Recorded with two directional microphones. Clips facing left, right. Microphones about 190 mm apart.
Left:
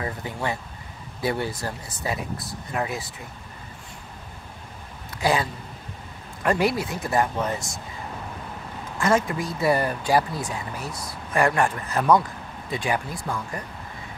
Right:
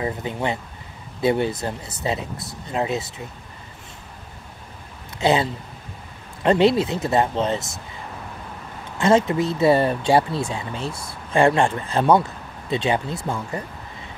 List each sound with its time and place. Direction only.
0.0 s speech: 20° right (ahead or behind)
5.2 s speech: 25° right (ahead or behind)
9.0 s speech: 25° right (ahead or behind)